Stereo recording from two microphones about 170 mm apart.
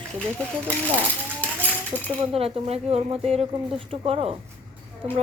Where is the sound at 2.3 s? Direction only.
35° right (ahead or behind).